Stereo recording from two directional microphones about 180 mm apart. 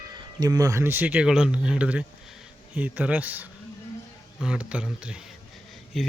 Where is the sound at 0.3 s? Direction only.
20° right (ahead or behind).